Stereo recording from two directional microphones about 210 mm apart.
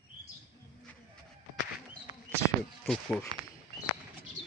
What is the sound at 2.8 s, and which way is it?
Speech, centre (ahead or behind).